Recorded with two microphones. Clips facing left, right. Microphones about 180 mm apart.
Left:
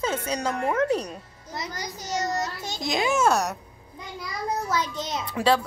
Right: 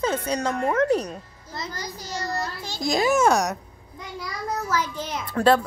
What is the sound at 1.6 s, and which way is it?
A child's voice, 15° left (ahead or behind).